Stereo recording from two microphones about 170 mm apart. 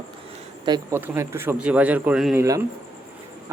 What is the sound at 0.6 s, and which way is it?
Speech, 25° right (ahead or behind).